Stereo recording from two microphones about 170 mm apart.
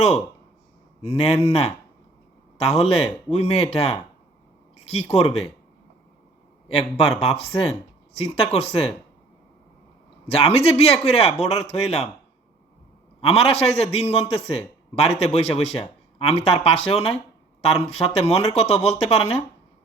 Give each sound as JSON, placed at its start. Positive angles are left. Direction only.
{"t": 1.0, "sound": "speech", "side_deg": 35}
{"t": 5.1, "sound": "speech", "side_deg": 35}
{"t": 6.7, "sound": "speech", "side_deg": 35}
{"t": 10.2, "sound": "speech", "side_deg": 35}
{"t": 13.2, "sound": "speech", "side_deg": 35}